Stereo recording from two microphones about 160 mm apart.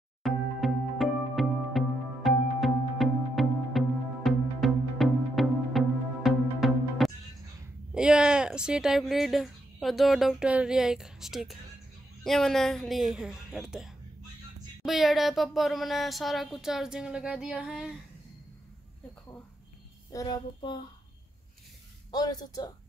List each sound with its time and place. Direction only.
0.2 s music: centre (ahead or behind)
7.9 s speech: 5° right (ahead or behind)
20.1 s child singing: 25° left (ahead or behind)
22.1 s child singing: 25° left (ahead or behind)